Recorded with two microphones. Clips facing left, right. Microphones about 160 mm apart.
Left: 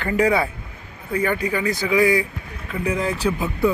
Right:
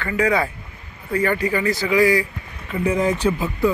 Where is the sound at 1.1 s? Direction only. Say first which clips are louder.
Right 2 dB; 15° left (ahead or behind).